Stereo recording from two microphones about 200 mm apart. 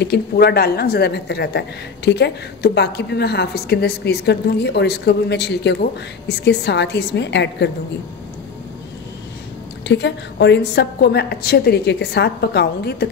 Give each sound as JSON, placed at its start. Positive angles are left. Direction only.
{"t": 0.0, "sound": "speech", "side_deg": 55}
{"t": 9.8, "sound": "speech", "side_deg": 60}